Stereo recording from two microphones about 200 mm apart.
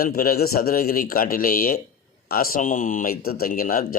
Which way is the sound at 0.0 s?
45° left (ahead or behind).